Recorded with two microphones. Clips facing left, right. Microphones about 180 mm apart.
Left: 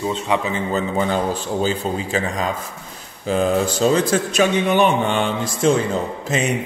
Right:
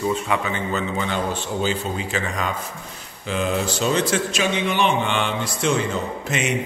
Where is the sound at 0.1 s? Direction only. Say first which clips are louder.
Left 2 dB; 30° left (ahead or behind).